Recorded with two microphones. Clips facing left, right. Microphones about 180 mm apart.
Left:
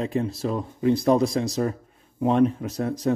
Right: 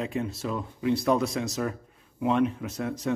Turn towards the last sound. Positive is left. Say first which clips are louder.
# left 5 dB
turn(degrees=35)  # may be behind; listen again after turning